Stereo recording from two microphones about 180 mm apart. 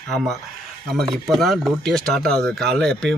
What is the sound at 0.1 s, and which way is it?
Speech, centre (ahead or behind).